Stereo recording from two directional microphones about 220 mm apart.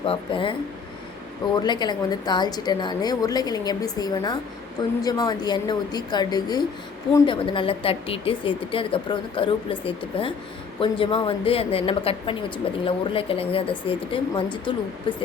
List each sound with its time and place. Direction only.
0.0 s a woman's voice: 25° left (ahead or behind)
1.5 s a woman's voice: 20° left (ahead or behind)